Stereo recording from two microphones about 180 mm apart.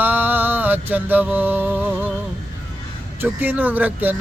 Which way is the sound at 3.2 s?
10° right (ahead or behind).